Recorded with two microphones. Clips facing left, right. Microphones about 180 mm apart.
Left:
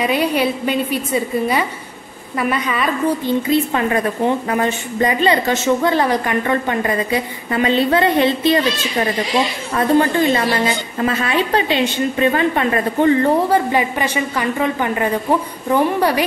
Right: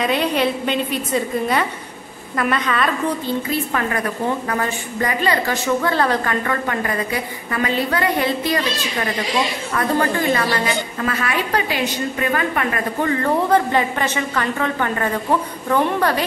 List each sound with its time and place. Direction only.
0.0 s a woman's voice: 10° left (ahead or behind)
3.4 s a woman's voice: 20° left (ahead or behind)
9.8 s a woman's voice: 25° left (ahead or behind)
13.5 s a woman's voice: 10° left (ahead or behind)